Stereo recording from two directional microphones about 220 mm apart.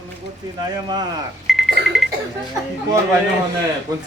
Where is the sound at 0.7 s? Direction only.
20° right (ahead or behind).